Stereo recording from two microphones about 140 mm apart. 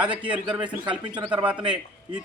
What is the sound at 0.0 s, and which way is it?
Speech, 10° right (ahead or behind).